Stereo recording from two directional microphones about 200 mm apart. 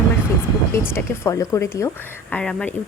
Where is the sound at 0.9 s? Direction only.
15° left (ahead or behind).